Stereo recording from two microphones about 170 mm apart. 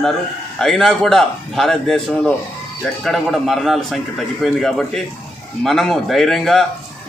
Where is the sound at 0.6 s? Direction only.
5° left (ahead or behind).